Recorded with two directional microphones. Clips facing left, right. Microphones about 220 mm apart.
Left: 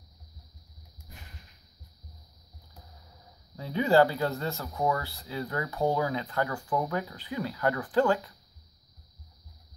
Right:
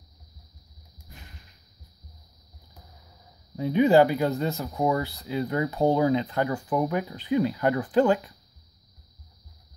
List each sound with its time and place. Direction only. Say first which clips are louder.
3.5 s speech: right 5 dB; 20° right (ahead or behind)